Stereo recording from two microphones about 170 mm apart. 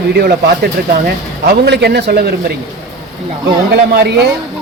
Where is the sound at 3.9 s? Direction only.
75° right (ahead or behind).